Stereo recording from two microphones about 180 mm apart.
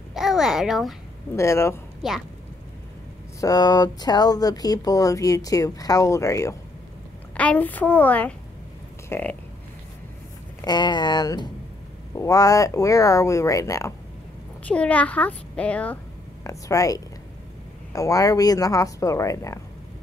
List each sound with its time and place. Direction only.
0.1 s a child's voice: centre (ahead or behind)
1.3 s a woman's voice: 15° left (ahead or behind)
3.3 s a woman's voice: 20° left (ahead or behind)
10.6 s speech: 25° left (ahead or behind)
14.6 s a woman's voice: 5° left (ahead or behind)
16.4 s speech: 20° left (ahead or behind)